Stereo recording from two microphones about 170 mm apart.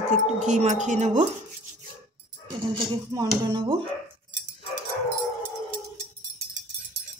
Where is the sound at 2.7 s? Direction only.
25° right (ahead or behind).